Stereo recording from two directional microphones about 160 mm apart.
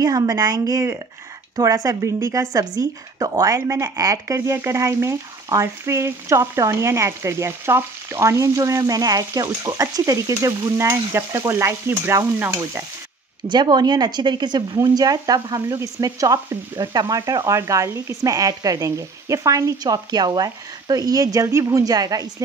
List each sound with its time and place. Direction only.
0.0 s speech: 25° right (ahead or behind)
13.5 s speech: 25° right (ahead or behind)